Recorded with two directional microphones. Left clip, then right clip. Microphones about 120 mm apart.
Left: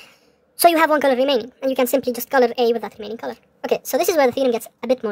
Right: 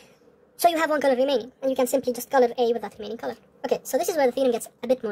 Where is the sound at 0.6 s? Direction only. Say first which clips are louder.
Left 6 dB; 35° left (ahead or behind).